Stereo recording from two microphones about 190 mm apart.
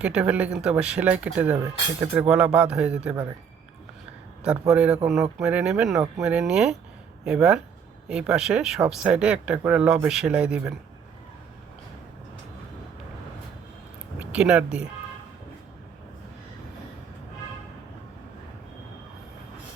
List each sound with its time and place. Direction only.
0.0 s speech: 5° right (ahead or behind)
4.7 s speech: 5° right (ahead or behind)
5.0 s speech: 15° right (ahead or behind)
14.2 s speech: 5° right (ahead or behind)